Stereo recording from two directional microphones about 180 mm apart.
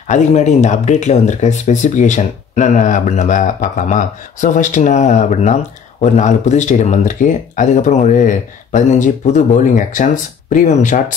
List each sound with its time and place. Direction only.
0.1 s speech: 40° left (ahead or behind)